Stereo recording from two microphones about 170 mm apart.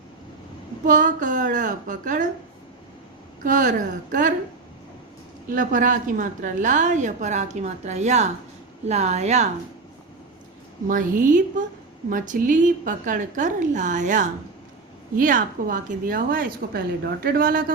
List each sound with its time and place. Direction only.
0.9 s a woman's voice: 50° right (ahead or behind)
3.4 s a woman's voice: 50° right (ahead or behind)
5.5 s a woman's voice: 50° right (ahead or behind)
10.8 s a woman's voice: 50° right (ahead or behind)